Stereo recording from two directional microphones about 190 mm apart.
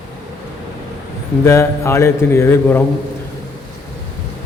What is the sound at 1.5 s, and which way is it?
Speech, 15° left (ahead or behind).